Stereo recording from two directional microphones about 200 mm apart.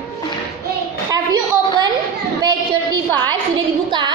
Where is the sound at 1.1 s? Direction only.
20° right (ahead or behind).